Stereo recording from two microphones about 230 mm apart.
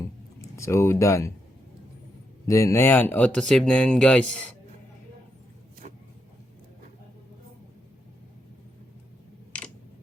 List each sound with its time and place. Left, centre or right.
0.0 s a sound: centre
2.5 s speech: centre
5.8 s vehicle: right